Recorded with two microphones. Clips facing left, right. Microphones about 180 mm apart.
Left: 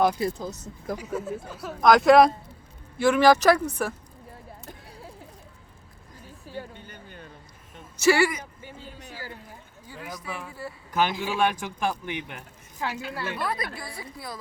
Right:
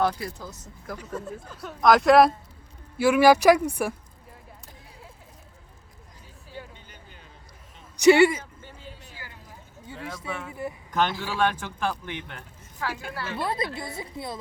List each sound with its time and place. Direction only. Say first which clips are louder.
0.0 s speech: left 3 dB; 20° left (ahead or behind)
0.9 s speech: left 3 dB; 10° left (ahead or behind); by 3.9 s 10° right (ahead or behind)
6.6 s a sound: left 4 dB; 55° left (ahead or behind)
7.9 s a woman's voice: right 5 dB; 20° right (ahead or behind)
9.8 s speech: right 2 dB; 25° right (ahead or behind)
10.9 s speech: left 1 dB; 10° left (ahead or behind)
12.9 s a woman's voice: left 1 dB; 50° right (ahead or behind)
13.3 s a woman's voice: right 5 dB; 25° right (ahead or behind)